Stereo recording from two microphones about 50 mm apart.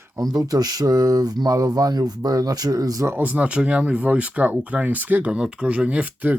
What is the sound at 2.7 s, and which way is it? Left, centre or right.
Speech, right.